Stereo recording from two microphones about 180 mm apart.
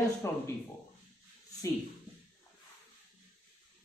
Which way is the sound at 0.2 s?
15° left (ahead or behind).